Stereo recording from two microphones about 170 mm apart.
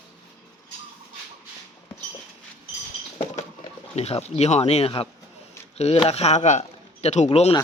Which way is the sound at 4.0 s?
40° left (ahead or behind).